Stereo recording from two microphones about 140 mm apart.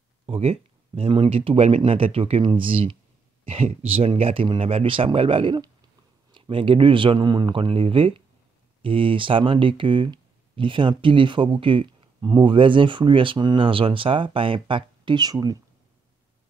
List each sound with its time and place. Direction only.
0.3 s speech: 45° right (ahead or behind)